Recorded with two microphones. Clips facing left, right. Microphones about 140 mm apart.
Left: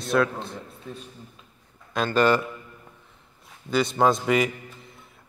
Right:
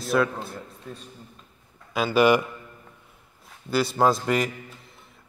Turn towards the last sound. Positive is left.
turn(degrees=0)  # may be behind; listen again after turning